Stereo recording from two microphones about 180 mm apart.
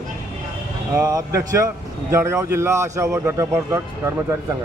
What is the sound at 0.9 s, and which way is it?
Speech, 15° right (ahead or behind).